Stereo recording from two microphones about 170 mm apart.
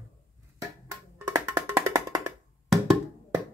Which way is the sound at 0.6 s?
15° right (ahead or behind).